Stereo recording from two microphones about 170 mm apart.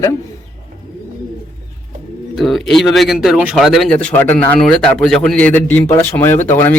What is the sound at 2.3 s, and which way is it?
A man's voice, centre (ahead or behind).